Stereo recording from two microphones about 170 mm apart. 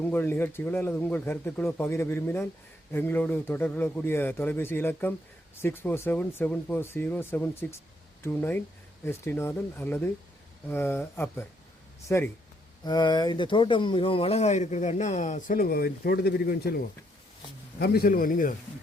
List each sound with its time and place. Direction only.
0.0 s a man's voice: 10° left (ahead or behind); by 18.5 s 55° left (ahead or behind)